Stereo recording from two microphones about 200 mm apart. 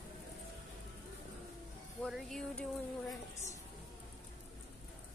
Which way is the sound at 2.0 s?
Centre (ahead or behind).